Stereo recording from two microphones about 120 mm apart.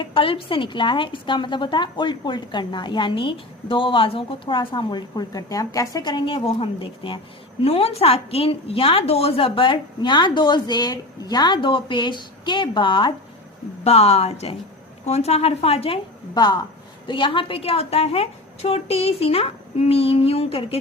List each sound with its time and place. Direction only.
0.0 s a woman's voice: 45° left (ahead or behind)
13.8 s a woman's voice: 60° left (ahead or behind)
16.3 s a woman's voice: 35° left (ahead or behind)